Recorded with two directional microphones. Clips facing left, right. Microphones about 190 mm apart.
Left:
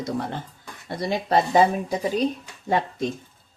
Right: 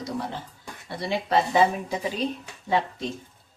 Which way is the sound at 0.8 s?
40° left (ahead or behind).